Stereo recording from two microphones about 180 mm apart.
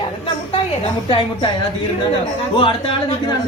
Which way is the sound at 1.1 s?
30° left (ahead or behind).